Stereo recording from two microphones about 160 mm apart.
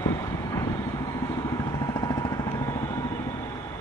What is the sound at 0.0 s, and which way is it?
Vehicle, 20° left (ahead or behind).